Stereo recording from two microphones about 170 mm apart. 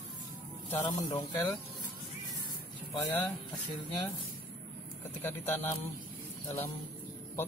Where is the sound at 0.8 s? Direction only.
20° left (ahead or behind).